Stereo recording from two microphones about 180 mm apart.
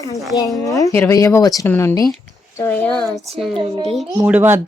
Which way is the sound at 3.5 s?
30° right (ahead or behind).